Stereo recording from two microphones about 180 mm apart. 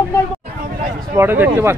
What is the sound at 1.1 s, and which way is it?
Speech, 10° right (ahead or behind).